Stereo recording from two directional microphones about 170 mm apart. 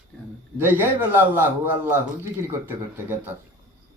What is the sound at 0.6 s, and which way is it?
A man's voice, 10° right (ahead or behind).